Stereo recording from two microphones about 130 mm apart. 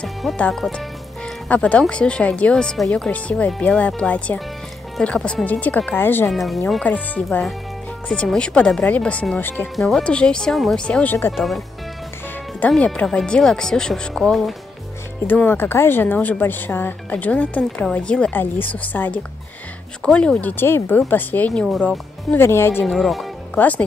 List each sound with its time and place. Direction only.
0.0 s speech: 5° left (ahead or behind)
6.3 s speech: centre (ahead or behind)
6.8 s speech: 10° left (ahead or behind)
9.8 s speech: centre (ahead or behind)
11.3 s speech: centre (ahead or behind)
15.2 s speech: 15° left (ahead or behind)
21.6 s speech: centre (ahead or behind)
22.3 s speech: 20° left (ahead or behind)
22.8 s speech: centre (ahead or behind)